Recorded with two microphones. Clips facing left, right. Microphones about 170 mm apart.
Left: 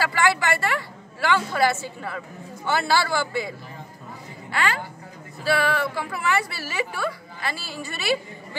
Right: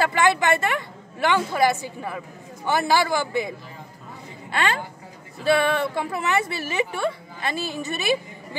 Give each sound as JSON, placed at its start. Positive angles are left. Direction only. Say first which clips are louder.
{"t": 0.0, "sound": "a woman's voice", "louder": "right 2 dB", "side_deg": -20}